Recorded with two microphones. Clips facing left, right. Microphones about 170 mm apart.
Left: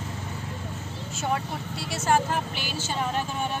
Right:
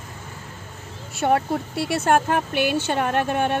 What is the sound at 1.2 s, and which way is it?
Speech, 60° right (ahead or behind).